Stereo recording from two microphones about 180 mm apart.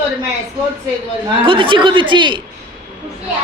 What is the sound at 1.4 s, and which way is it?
A man's voice, 30° right (ahead or behind).